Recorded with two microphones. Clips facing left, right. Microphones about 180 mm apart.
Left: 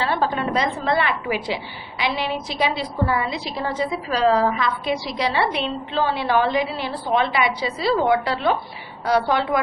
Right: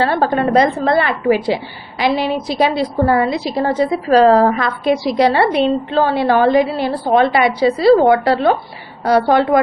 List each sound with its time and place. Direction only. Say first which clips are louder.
0.0 s a woman's voice: right 7 dB; 50° right (ahead or behind)